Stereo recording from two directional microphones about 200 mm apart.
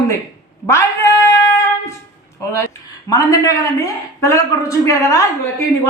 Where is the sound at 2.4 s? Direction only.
15° left (ahead or behind).